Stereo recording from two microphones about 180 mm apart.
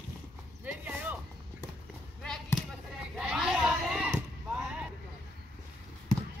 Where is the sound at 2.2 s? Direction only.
5° left (ahead or behind).